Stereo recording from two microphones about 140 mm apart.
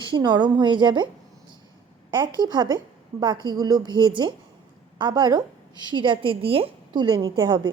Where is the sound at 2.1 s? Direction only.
30° right (ahead or behind).